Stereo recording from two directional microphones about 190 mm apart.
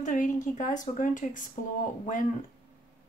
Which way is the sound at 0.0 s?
45° left (ahead or behind).